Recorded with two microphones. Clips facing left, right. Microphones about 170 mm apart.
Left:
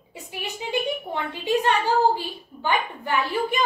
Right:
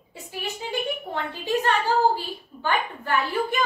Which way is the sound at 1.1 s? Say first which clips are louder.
Left 2 dB; 15° left (ahead or behind).